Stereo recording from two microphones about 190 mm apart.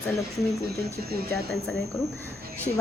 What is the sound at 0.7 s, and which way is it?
Speech, 55° right (ahead or behind).